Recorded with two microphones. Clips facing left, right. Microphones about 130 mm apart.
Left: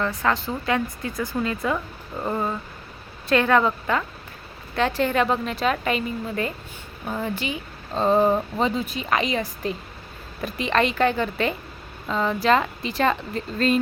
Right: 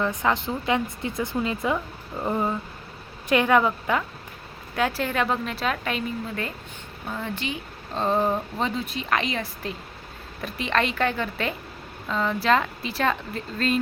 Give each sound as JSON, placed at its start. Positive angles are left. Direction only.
{"t": 0.0, "sound": "a woman's voice", "side_deg": -20}